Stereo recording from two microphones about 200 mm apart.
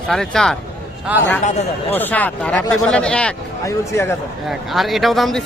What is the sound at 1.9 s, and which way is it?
Speech, 10° left (ahead or behind).